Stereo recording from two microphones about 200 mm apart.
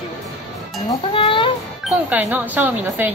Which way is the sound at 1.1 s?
25° left (ahead or behind).